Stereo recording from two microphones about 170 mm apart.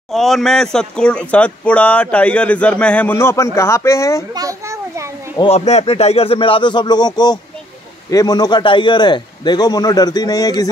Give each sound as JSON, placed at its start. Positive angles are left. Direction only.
{"t": 0.1, "sound": "speech", "side_deg": 0}
{"t": 4.3, "sound": "children playing", "side_deg": -20}
{"t": 5.4, "sound": "a man's voice", "side_deg": 40}